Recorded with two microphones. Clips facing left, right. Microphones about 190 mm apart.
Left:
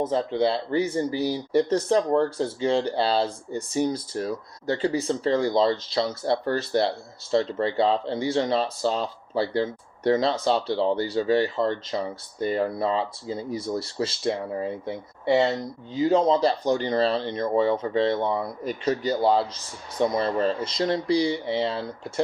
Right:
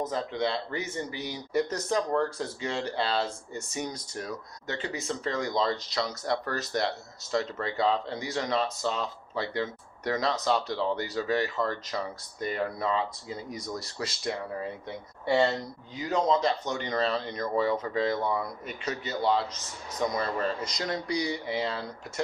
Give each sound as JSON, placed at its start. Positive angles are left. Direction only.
{"t": 0.0, "sound": "speech", "side_deg": 30}